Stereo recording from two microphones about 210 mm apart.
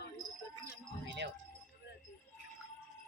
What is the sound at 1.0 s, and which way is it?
Music, 55° right (ahead or behind).